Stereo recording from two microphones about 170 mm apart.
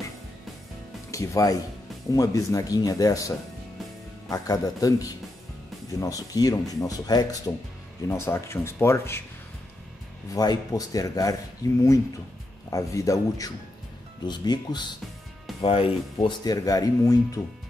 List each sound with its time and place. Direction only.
1.1 s speech: 20° left (ahead or behind)
10.3 s speech: 20° left (ahead or behind)
12.6 s speech: 20° left (ahead or behind)